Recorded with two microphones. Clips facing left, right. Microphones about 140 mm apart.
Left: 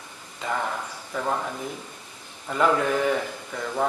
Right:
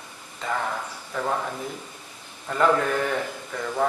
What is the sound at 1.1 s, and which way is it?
Speech, 10° left (ahead or behind).